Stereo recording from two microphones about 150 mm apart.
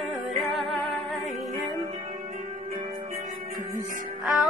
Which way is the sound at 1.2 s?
55° right (ahead or behind).